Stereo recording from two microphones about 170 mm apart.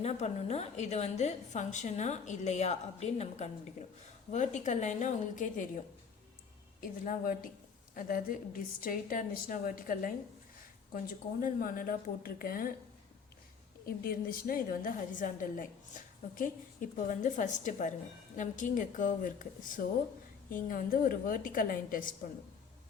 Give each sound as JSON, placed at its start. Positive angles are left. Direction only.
{"t": 0.0, "sound": "a woman's voice", "side_deg": 40}
{"t": 7.0, "sound": "a woman's voice", "side_deg": 55}
{"t": 13.8, "sound": "a woman's voice", "side_deg": 60}
{"t": 17.1, "sound": "a woman's voice", "side_deg": 50}